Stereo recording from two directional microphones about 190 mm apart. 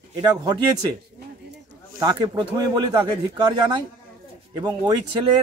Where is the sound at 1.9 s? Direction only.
20° right (ahead or behind).